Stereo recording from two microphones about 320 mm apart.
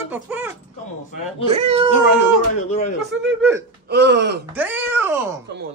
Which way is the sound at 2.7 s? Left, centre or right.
Left.